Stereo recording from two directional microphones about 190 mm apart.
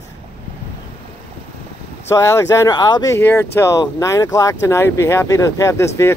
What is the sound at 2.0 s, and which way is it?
Speech, 15° left (ahead or behind).